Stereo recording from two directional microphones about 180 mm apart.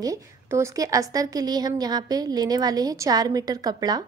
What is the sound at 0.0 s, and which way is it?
A woman's voice, 15° right (ahead or behind).